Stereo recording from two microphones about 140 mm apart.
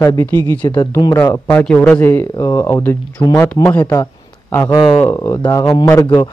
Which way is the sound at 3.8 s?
30° left (ahead or behind).